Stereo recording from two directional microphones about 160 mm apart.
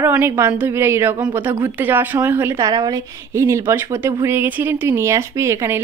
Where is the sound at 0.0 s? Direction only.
15° right (ahead or behind).